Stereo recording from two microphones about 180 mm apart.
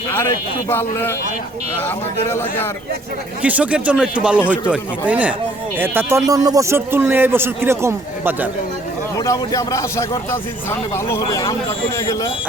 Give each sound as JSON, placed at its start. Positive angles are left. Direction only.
{"t": 0.3, "sound": "speech", "side_deg": 15}
{"t": 3.4, "sound": "speech", "side_deg": -10}
{"t": 9.1, "sound": "a man's voice", "side_deg": 20}